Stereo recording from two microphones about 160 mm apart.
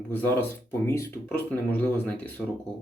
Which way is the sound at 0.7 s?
15° left (ahead or behind).